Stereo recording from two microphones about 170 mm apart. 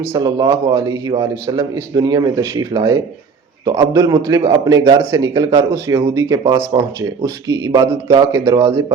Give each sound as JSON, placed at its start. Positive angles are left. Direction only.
{"t": 0.1, "sound": "a man's voice", "side_deg": -25}